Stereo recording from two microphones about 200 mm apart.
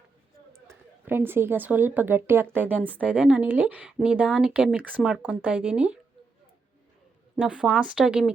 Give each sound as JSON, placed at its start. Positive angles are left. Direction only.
{"t": 1.0, "sound": "speech", "side_deg": -10}
{"t": 7.3, "sound": "speech", "side_deg": -5}